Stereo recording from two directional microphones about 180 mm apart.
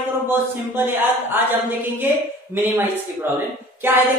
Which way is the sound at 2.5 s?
10° right (ahead or behind).